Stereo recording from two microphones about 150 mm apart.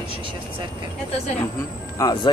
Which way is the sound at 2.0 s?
20° left (ahead or behind).